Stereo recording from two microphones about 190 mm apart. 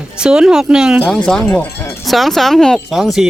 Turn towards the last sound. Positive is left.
turn(degrees=0)  # may be behind; listen again after turning